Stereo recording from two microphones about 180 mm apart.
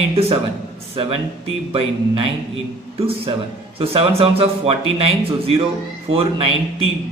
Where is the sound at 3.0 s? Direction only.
30° right (ahead or behind).